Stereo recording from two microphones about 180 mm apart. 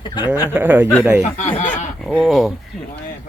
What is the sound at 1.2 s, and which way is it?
Speech, 40° left (ahead or behind).